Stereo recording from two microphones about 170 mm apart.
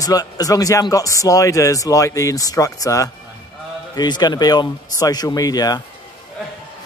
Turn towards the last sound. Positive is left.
turn(degrees=20)  # may be behind; listen again after turning